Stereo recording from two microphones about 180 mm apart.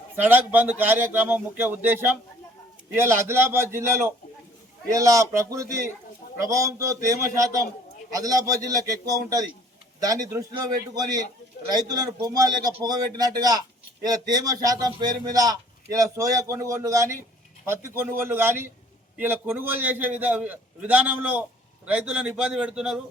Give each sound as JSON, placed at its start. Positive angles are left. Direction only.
{"t": 0.2, "sound": "a man's voice", "side_deg": -10}